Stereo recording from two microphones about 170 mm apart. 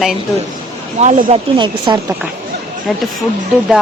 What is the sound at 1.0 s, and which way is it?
Speech, 30° right (ahead or behind).